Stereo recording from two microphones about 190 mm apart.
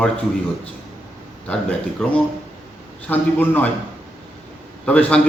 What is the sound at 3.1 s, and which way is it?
Speech, 10° left (ahead or behind).